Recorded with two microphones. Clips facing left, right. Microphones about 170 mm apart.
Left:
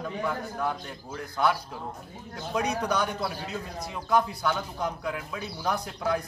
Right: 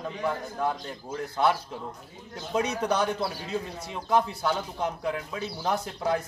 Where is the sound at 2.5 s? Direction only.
30° right (ahead or behind).